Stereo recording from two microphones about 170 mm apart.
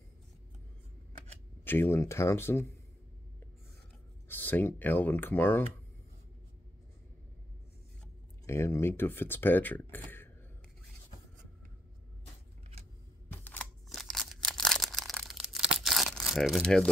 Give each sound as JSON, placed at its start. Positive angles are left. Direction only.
{"t": 1.6, "sound": "speech", "side_deg": 15}
{"t": 4.3, "sound": "speech", "side_deg": 10}
{"t": 8.5, "sound": "speech", "side_deg": 15}
{"t": 13.3, "sound": "single-lens reflex camera", "side_deg": 10}
{"t": 13.8, "sound": "a sound", "side_deg": 0}
{"t": 15.7, "sound": "tearing", "side_deg": 0}